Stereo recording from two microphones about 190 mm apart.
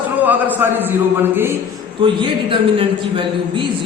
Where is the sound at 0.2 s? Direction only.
10° right (ahead or behind).